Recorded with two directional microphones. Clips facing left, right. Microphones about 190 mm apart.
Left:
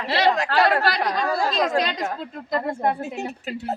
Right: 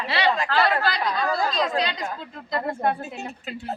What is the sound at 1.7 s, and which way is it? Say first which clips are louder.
A woman's voice: left 3 dB; 75° left (ahead or behind).